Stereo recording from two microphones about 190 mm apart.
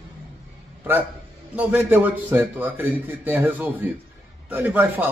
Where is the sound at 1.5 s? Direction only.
10° right (ahead or behind).